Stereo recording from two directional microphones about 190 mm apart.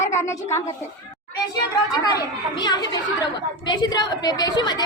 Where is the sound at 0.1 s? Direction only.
15° left (ahead or behind).